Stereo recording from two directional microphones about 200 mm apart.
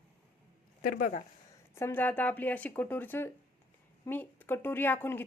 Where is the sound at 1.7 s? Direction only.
10° left (ahead or behind).